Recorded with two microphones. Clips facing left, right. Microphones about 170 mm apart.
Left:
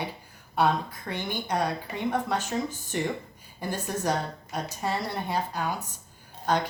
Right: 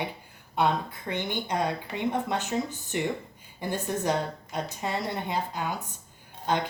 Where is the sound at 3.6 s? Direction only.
20° right (ahead or behind).